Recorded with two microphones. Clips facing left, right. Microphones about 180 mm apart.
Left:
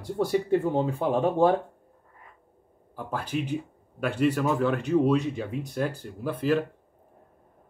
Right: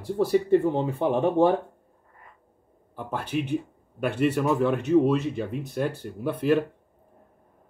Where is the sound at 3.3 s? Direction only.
Centre (ahead or behind).